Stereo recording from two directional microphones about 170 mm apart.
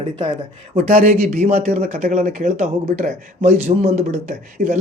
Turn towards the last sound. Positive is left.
turn(degrees=-40)  # may be behind; listen again after turning